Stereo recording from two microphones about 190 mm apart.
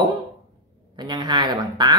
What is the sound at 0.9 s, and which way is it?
Speech, 20° right (ahead or behind).